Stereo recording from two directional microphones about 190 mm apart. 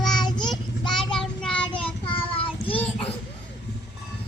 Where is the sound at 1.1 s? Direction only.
5° left (ahead or behind).